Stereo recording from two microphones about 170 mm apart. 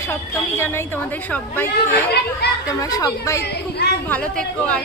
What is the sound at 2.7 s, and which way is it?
Speech, 20° left (ahead or behind).